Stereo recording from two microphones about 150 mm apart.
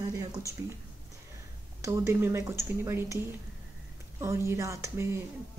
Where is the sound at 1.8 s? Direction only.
20° right (ahead or behind).